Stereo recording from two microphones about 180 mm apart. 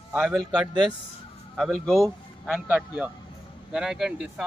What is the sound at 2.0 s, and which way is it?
A man's voice, centre (ahead or behind).